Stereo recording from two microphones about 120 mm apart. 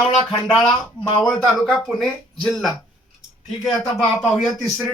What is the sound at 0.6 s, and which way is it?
Speech, 35° left (ahead or behind).